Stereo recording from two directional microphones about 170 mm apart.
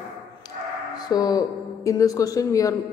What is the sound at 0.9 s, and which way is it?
A woman's voice, 20° left (ahead or behind).